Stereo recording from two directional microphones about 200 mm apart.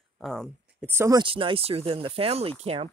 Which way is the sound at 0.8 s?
15° right (ahead or behind).